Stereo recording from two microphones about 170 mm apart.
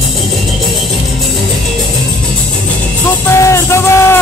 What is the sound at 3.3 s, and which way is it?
Music, 15° left (ahead or behind).